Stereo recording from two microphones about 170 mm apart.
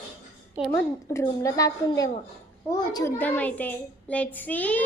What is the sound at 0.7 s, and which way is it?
A woman's voice, 15° left (ahead or behind).